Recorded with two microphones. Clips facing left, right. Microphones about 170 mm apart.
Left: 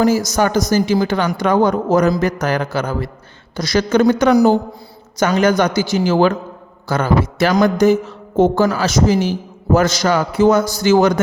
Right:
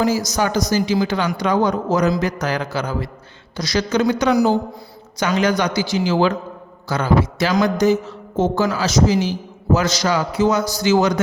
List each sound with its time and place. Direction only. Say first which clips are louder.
0.0 s a man's voice: left 4 dB; 50° left (ahead or behind)